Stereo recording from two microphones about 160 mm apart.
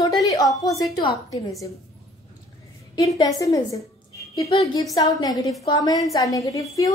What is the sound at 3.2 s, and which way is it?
A woman's voice, 20° left (ahead or behind).